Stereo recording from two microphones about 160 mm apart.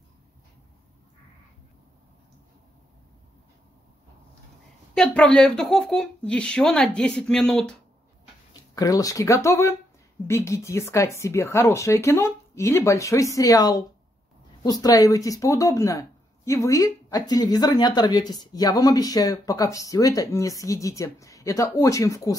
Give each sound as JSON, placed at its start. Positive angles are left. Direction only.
{"t": 4.9, "sound": "speech", "side_deg": 5}
{"t": 8.7, "sound": "speech", "side_deg": 20}